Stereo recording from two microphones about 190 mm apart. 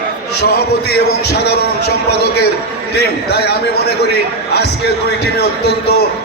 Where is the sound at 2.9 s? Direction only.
60° left (ahead or behind).